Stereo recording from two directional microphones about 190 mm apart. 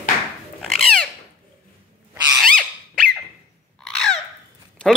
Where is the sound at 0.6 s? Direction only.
Centre (ahead or behind).